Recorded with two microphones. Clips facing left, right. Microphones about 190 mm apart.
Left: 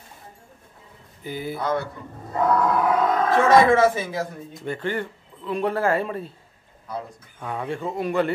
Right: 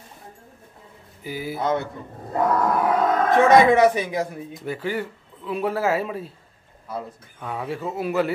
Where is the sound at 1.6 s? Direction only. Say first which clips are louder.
Right 2 dB; 20° right (ahead or behind).